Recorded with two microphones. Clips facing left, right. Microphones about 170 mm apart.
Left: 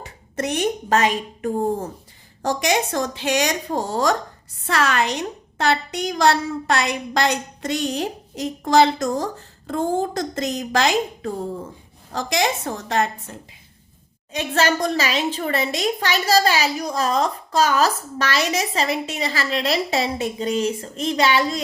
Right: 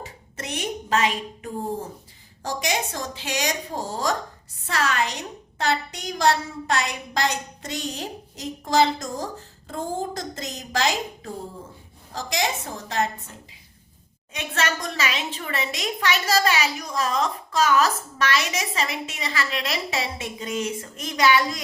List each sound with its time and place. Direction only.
0.0 s speech: 55° left (ahead or behind)
2.4 s a woman's voice: 65° left (ahead or behind)
14.3 s a woman's voice: 35° left (ahead or behind)